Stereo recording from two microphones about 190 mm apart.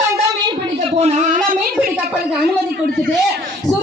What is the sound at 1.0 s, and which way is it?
Speech, 40° right (ahead or behind).